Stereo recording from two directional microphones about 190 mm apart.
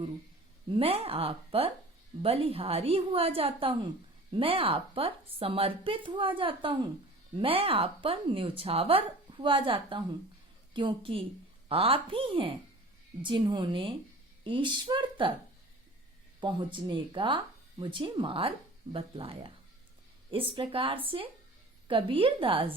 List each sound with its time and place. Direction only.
0.7 s a woman's voice: 30° right (ahead or behind)
16.4 s speech: 25° right (ahead or behind)